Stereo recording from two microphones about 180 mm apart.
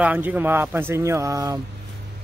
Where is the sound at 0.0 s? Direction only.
10° right (ahead or behind).